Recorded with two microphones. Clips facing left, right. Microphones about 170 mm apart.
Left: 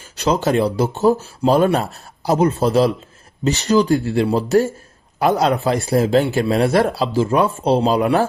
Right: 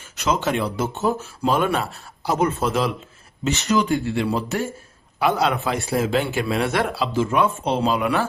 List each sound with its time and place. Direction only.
0.2 s a man's voice: 35° left (ahead or behind)